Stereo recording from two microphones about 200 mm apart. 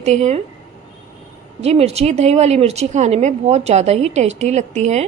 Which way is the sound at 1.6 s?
30° right (ahead or behind).